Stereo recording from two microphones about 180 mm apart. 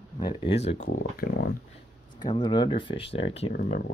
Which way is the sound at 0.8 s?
55° left (ahead or behind).